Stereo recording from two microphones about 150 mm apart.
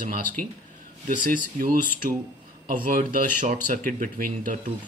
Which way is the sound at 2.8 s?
65° right (ahead or behind).